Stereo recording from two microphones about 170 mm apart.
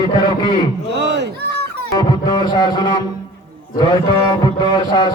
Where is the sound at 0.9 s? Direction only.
90° right; by 1.6 s 70° right (ahead or behind).